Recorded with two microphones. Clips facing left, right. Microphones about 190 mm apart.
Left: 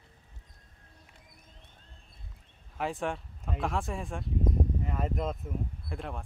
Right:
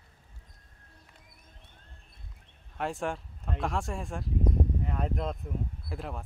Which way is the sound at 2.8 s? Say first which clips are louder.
Even; centre (ahead or behind).